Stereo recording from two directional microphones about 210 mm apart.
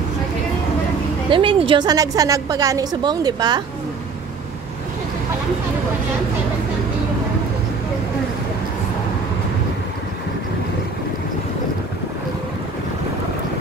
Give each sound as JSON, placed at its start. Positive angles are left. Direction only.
{"t": 1.3, "sound": "a woman's voice", "side_deg": -25}